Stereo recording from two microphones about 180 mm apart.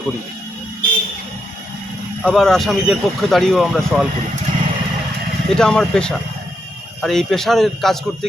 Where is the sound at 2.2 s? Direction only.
5° left (ahead or behind).